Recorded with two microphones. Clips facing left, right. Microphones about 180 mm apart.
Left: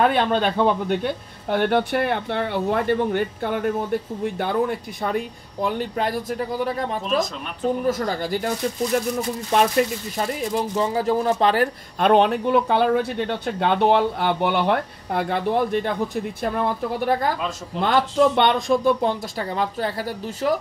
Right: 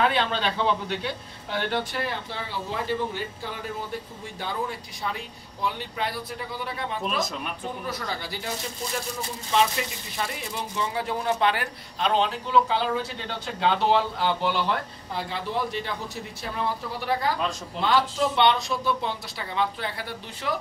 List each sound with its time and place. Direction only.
0.0 s speech: 50° left (ahead or behind)
12.0 s speech: 60° left (ahead or behind); by 20.5 s 40° left (ahead or behind)